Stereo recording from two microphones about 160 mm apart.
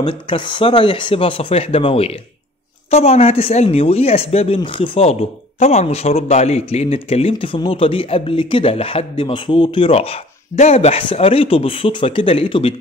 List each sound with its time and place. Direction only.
0.0 s speech: 30° left (ahead or behind)